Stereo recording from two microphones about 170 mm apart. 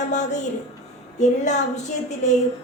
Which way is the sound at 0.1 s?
45° left (ahead or behind).